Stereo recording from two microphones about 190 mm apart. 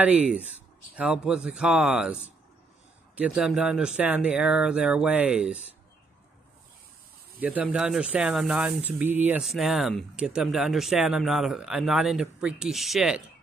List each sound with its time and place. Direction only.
0.0 s speech: 5° right (ahead or behind)
7.3 s speech: 10° right (ahead or behind)